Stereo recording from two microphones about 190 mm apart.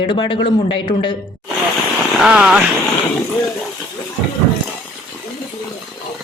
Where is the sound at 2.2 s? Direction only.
5° right (ahead or behind).